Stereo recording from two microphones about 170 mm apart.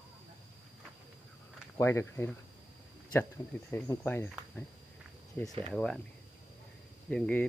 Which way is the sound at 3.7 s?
15° left (ahead or behind).